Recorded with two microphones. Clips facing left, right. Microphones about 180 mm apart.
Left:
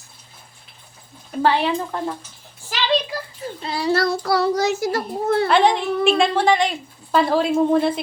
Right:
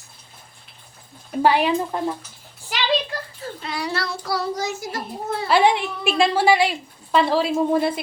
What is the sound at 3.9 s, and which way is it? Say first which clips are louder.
Child singing: left 12 dB; 40° left (ahead or behind).